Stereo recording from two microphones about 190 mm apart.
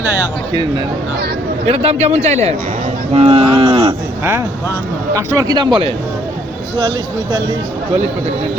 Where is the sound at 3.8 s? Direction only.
15° right (ahead or behind).